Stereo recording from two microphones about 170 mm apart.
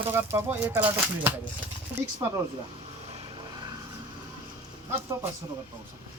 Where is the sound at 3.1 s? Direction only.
25° right (ahead or behind).